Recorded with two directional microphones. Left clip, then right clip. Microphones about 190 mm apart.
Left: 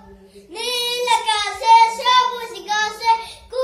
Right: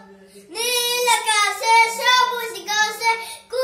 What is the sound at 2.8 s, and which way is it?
Child singing, 10° right (ahead or behind).